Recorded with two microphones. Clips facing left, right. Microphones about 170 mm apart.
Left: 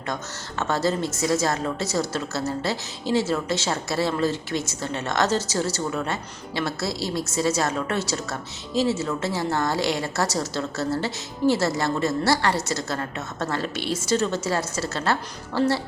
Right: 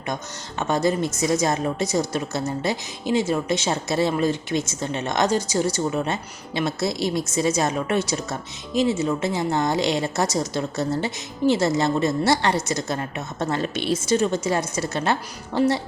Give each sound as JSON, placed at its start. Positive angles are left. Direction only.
{"t": 0.6, "sound": "a woman's voice", "side_deg": -15}